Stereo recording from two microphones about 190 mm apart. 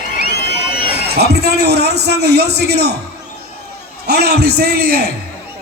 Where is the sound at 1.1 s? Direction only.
60° right (ahead or behind).